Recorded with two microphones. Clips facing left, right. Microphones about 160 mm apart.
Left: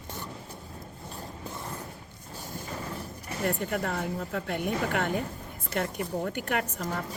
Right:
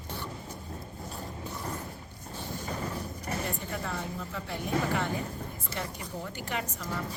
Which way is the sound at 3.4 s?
60° left (ahead or behind).